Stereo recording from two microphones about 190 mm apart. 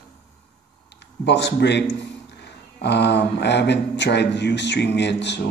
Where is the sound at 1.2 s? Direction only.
65° left (ahead or behind).